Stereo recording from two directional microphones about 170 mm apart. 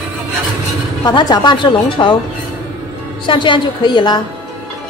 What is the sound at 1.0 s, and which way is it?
A woman's voice, 25° left (ahead or behind).